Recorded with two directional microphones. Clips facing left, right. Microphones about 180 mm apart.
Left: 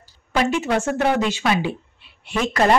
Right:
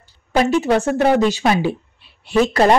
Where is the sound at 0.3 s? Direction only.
35° right (ahead or behind).